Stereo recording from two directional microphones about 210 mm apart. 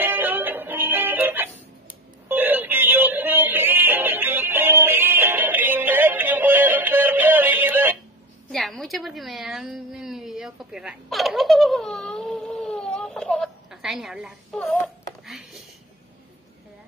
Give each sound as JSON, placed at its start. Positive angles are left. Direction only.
{"t": 0.0, "sound": "music", "side_deg": -10}
{"t": 2.2, "sound": "synthetic singing", "side_deg": -10}
{"t": 8.5, "sound": "a sound", "side_deg": 0}